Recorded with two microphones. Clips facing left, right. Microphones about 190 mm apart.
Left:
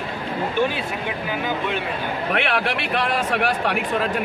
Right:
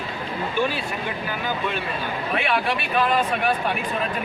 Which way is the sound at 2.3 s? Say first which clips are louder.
Even; 75° left (ahead or behind).